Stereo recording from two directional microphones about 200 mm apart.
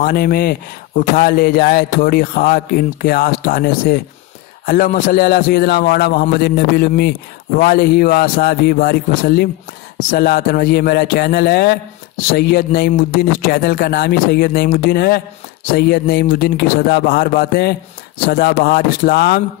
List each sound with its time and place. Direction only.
0.0 s a man's voice: 50° left (ahead or behind)